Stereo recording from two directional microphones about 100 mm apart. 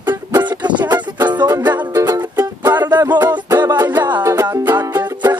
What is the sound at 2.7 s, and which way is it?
Music, 20° right (ahead or behind).